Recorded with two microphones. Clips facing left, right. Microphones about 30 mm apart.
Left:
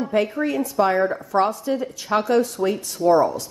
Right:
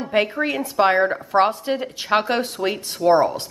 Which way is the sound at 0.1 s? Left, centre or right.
Right.